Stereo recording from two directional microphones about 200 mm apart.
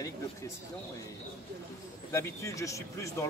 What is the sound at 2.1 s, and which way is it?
Speech, 15° left (ahead or behind).